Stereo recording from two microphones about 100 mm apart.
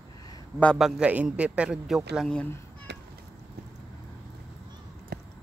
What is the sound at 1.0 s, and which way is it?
A man's voice, 15° right (ahead or behind).